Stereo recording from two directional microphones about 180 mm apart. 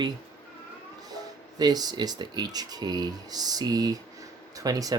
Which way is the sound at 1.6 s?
20° right (ahead or behind).